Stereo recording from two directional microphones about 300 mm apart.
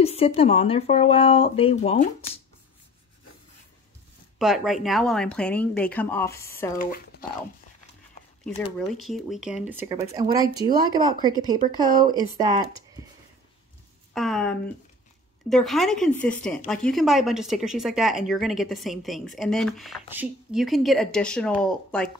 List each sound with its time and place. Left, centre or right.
0.0 s speech: centre
4.4 s speech: centre
6.8 s speech: left
8.7 s speech: centre
14.1 s speech: centre